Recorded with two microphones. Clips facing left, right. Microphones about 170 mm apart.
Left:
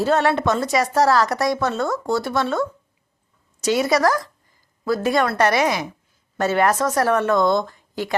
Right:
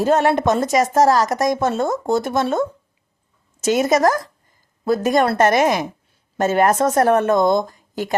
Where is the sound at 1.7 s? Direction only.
20° right (ahead or behind).